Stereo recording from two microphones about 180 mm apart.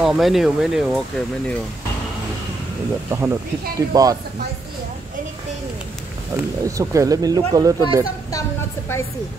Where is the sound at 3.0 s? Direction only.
15° right (ahead or behind).